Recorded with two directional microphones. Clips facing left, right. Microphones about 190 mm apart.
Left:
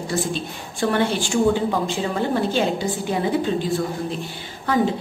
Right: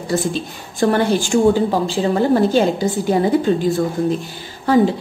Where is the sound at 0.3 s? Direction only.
40° right (ahead or behind).